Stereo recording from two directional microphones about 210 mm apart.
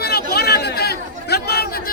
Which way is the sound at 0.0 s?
50° left (ahead or behind).